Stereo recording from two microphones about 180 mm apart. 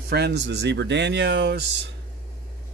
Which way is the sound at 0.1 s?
65° right (ahead or behind).